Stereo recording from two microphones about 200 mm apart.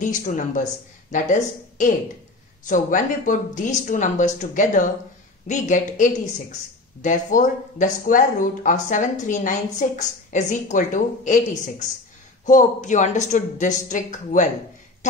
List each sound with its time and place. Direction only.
0.0 s a woman's voice: 40° left (ahead or behind)